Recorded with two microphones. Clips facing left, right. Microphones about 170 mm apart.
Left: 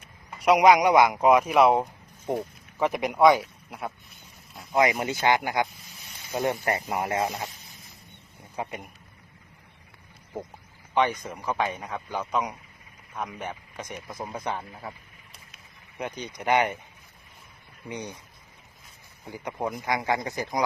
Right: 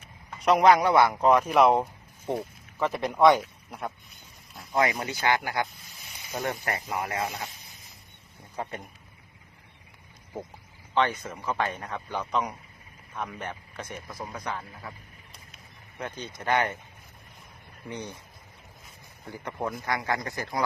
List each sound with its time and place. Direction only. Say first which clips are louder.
0.3 s a man's voice: left 2 dB; 10° left (ahead or behind)
4.8 s speech: left 3 dB; 20° left (ahead or behind)
8.5 s speech: left 1 dB; 15° left (ahead or behind)
10.9 s speech: left 1 dB; 15° left (ahead or behind)
16.0 s speech: left 3 dB; 15° left (ahead or behind)
17.8 s speech: left 1 dB; 15° left (ahead or behind)
19.2 s speech: left 2 dB; 15° left (ahead or behind)